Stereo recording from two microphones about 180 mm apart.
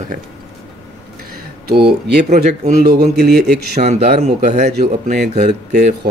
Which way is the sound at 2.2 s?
40° right (ahead or behind).